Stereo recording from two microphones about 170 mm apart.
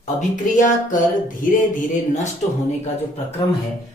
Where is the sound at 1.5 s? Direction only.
45° left (ahead or behind).